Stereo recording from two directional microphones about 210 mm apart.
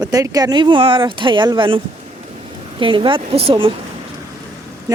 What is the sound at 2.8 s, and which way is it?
Speech, 25° right (ahead or behind).